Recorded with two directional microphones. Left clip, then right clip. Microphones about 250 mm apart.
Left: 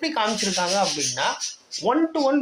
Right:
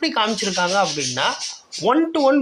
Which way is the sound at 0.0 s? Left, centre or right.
Right.